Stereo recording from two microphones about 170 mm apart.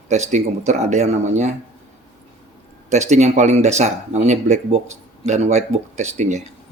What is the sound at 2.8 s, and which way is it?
Speech, 40° right (ahead or behind).